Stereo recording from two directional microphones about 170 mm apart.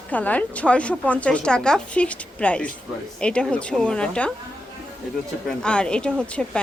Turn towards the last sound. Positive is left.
turn(degrees=5)  # may be behind; listen again after turning